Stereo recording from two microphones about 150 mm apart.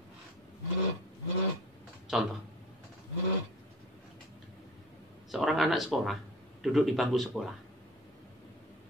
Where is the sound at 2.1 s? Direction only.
Centre (ahead or behind).